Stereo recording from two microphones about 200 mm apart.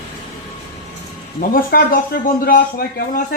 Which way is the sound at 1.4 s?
45° left (ahead or behind).